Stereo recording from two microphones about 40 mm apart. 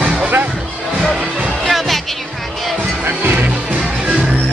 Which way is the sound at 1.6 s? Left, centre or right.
Centre.